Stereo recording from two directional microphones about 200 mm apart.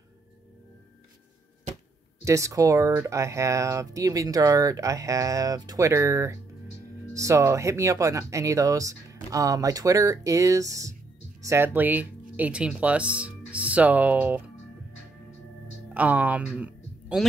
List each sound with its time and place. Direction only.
2.2 s speech: 15° right (ahead or behind)
15.9 s speech: 10° right (ahead or behind)